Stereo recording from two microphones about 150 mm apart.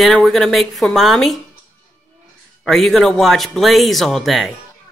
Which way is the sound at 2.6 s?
Centre (ahead or behind).